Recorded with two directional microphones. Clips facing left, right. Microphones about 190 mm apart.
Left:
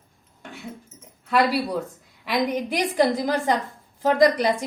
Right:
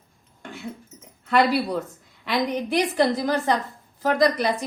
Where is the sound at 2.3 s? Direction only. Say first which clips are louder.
Even; 10° left (ahead or behind).